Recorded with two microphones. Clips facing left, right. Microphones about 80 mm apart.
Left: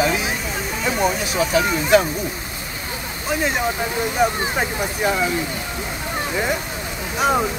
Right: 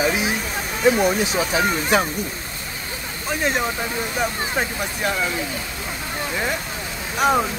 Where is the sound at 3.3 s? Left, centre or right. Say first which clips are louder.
Left 1 dB; centre.